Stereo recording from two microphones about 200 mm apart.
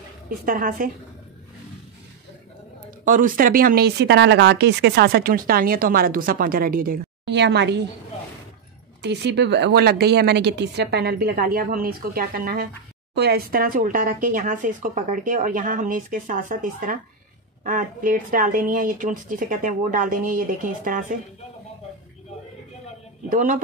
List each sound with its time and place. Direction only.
0.3 s speech: 45° right (ahead or behind)
3.1 s speech: 40° right (ahead or behind); by 7.8 s 60° right (ahead or behind)
9.0 s speech: 60° right (ahead or behind); by 21.2 s 40° right (ahead or behind)
23.3 s speech: 40° right (ahead or behind)